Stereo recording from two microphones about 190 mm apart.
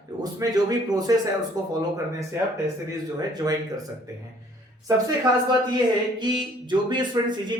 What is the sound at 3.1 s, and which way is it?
Speech, 20° right (ahead or behind).